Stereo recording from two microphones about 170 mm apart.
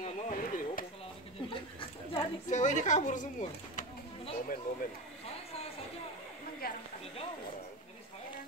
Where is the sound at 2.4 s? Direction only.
45° left (ahead or behind).